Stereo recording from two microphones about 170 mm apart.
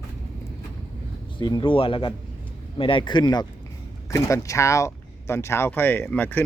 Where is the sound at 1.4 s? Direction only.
25° left (ahead or behind).